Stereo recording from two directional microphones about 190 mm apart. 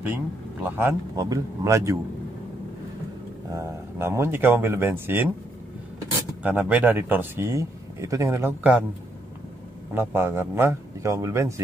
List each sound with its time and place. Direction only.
0.0 s speech: 10° right (ahead or behind)
3.5 s speech: 15° right (ahead or behind)
6.4 s speech: 10° right (ahead or behind)
9.9 s speech: 10° right (ahead or behind)